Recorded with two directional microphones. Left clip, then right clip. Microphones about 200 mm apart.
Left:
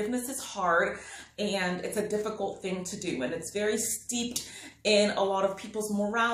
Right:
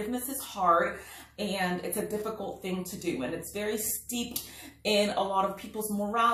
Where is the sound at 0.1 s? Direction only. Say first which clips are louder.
Left 2 dB; 20° left (ahead or behind).